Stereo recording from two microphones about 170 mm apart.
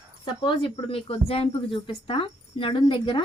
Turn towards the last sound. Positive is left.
turn(degrees=30)  # may be behind; listen again after turning